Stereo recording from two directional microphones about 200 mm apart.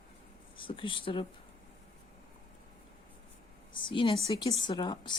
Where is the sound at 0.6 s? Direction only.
25° left (ahead or behind).